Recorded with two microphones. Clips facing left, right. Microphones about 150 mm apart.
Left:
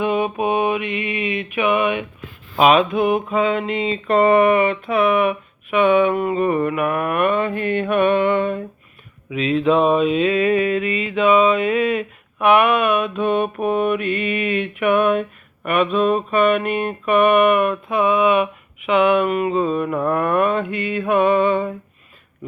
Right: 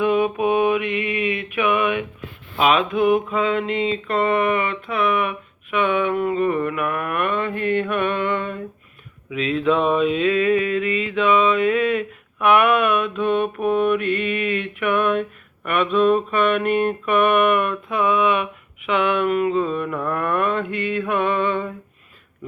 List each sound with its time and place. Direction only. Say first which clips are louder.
0.0 s mantra: right 1 dB; 20° left (ahead or behind)
0.8 s mantra: right 1 dB; 50° right (ahead or behind)
1.0 s mantra: even; 20° left (ahead or behind)
3.5 s mantra: even; 10° left (ahead or behind)
12.5 s a sound: right 1 dB; 5° left (ahead or behind)
13.1 s mantra: left 1 dB; 15° left (ahead or behind)